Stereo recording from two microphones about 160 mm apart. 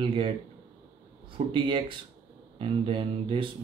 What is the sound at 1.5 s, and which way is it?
Speech, 30° right (ahead or behind).